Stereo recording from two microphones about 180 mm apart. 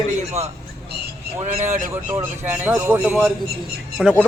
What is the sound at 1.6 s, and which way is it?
Speech, 45° right (ahead or behind).